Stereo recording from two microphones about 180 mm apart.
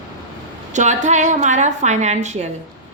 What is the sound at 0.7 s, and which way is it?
A woman's voice, 40° right (ahead or behind).